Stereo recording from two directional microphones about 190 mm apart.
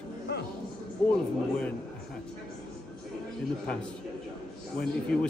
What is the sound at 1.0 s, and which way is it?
Speech, 10° left (ahead or behind).